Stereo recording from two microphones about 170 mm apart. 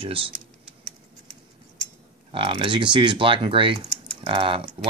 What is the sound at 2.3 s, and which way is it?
Speech, 30° right (ahead or behind).